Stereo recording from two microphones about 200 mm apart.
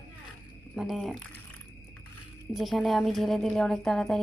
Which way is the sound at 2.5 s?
Centre (ahead or behind).